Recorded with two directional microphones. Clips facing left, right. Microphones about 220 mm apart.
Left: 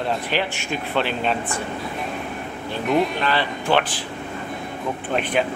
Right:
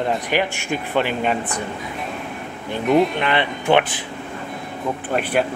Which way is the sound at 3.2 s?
20° right (ahead or behind).